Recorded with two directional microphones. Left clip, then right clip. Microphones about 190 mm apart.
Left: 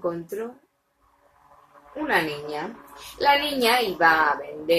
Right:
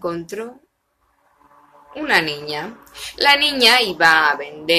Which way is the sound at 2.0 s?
10° right (ahead or behind).